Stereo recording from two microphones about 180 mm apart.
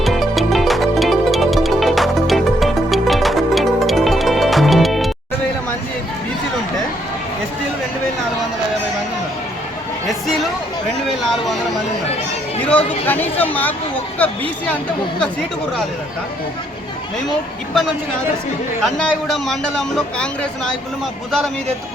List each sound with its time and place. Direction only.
0.0 s music: centre (ahead or behind)
10.1 s a sound: centre (ahead or behind)
12.5 s speech: 10° left (ahead or behind)
18.8 s speech: centre (ahead or behind)